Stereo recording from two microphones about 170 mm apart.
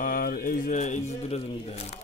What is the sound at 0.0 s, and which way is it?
Speech, 55° left (ahead or behind).